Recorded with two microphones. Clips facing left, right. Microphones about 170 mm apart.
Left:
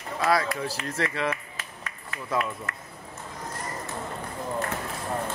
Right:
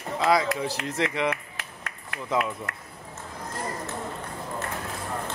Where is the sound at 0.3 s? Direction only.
15° right (ahead or behind).